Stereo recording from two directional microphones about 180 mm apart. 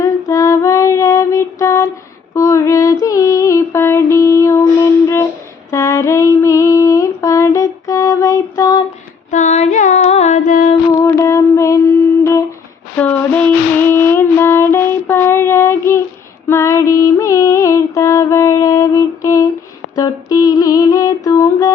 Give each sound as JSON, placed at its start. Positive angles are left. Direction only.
{"t": 0.0, "sound": "child singing", "side_deg": 20}
{"t": 2.3, "sound": "mantra", "side_deg": 15}
{"t": 5.7, "sound": "female singing", "side_deg": 15}
{"t": 9.3, "sound": "female singing", "side_deg": 40}
{"t": 11.0, "sound": "a sound", "side_deg": 15}
{"t": 12.2, "sound": "humming", "side_deg": 15}
{"t": 13.0, "sound": "a sound", "side_deg": 10}
{"t": 13.8, "sound": "music", "side_deg": 15}
{"t": 20.0, "sound": "a sound", "side_deg": 20}